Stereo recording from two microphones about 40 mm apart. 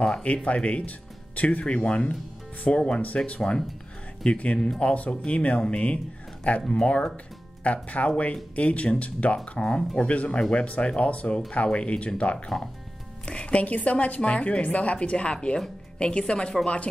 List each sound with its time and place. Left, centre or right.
0.0 s a woman's voice: left
4.6 s speech: centre
4.8 s a woman's voice: left
5.1 s speech: left
7.6 s a woman's voice: left